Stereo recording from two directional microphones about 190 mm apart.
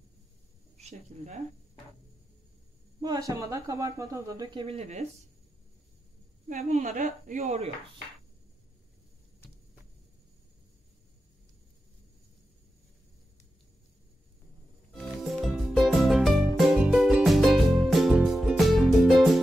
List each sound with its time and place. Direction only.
0.7 s speech: 35° right (ahead or behind)
3.0 s speech: 20° right (ahead or behind)
6.5 s speech: 40° right (ahead or behind)
15.4 s music: centre (ahead or behind)